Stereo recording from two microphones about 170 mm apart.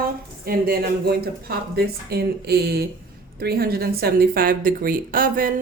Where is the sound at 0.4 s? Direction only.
60° right (ahead or behind).